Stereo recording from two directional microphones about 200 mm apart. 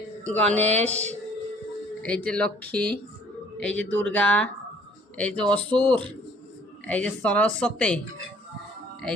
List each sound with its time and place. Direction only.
0.3 s speech: 5° left (ahead or behind)
0.9 s speech: 35° right (ahead or behind)
2.0 s speech: 5° left (ahead or behind)